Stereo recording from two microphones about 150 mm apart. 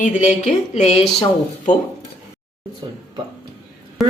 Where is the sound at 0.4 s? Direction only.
50° left (ahead or behind).